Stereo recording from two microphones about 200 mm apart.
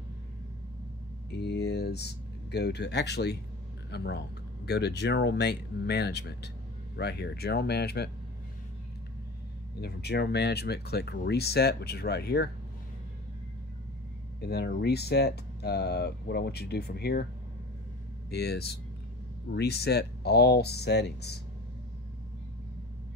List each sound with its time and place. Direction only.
1.4 s speech: 55° left (ahead or behind)
9.8 s speech: 55° left (ahead or behind)
14.4 s speech: 55° left (ahead or behind)
18.3 s speech: 55° left (ahead or behind)